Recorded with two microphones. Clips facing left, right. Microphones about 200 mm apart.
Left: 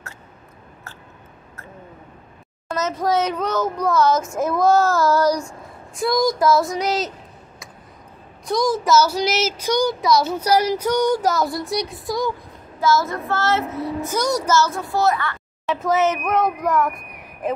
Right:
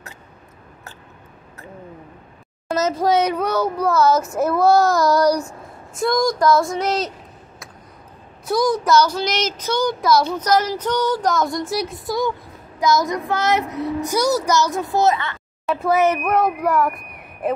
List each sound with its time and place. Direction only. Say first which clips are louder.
2.7 s a sound: right 4 dB; 35° right (ahead or behind)
3.1 s a child's voice: right 1 dB; 15° right (ahead or behind)
5.9 s speech: even; centre (ahead or behind)
8.5 s speech: right 1 dB; centre (ahead or behind)
10.0 s speech: right 3 dB; centre (ahead or behind)
10.3 s speech: left 1 dB; 10° left (ahead or behind)
12.8 s a child's voice: right 1 dB; 15° right (ahead or behind)
15.6 s speech: right 2 dB; 5° right (ahead or behind)